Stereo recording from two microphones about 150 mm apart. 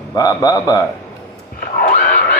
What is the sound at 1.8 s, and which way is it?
Neigh, 60° left (ahead or behind).